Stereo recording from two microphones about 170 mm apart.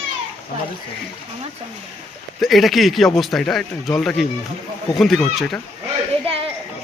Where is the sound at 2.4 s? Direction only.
Centre (ahead or behind).